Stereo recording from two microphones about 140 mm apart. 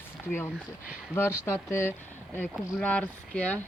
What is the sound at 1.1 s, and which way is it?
Speech, 15° left (ahead or behind).